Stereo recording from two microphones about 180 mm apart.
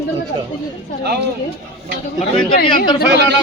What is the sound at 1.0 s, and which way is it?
Speech, 60° right (ahead or behind).